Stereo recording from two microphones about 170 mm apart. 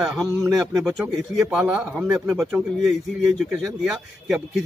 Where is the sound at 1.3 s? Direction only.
5° right (ahead or behind).